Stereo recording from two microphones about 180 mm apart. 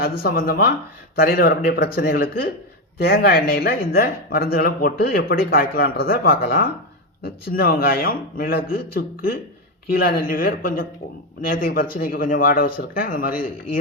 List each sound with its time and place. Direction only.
0.0 s speech: 60° left (ahead or behind)